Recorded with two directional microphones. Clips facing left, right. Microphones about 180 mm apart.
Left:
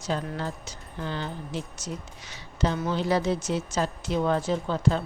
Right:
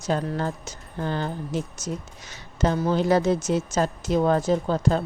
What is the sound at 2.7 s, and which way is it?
Speech, 35° right (ahead or behind).